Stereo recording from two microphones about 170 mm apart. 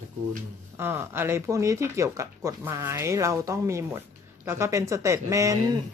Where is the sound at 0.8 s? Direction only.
15° right (ahead or behind).